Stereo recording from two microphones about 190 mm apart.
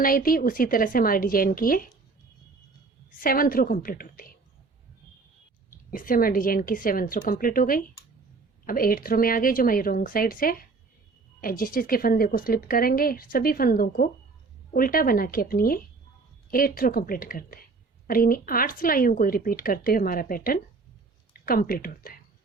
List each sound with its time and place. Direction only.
0.0 s a woman's voice: 50° left (ahead or behind)
3.1 s a woman's voice: 50° left (ahead or behind)
5.9 s a woman's voice: 45° left (ahead or behind)